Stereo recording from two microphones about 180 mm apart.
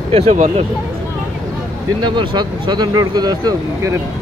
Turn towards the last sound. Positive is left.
turn(degrees=-20)  # may be behind; listen again after turning